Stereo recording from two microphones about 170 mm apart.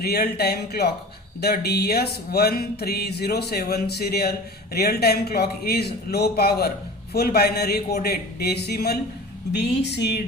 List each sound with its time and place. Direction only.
0.0 s speech: 70° left (ahead or behind)
9.5 s speech: 80° left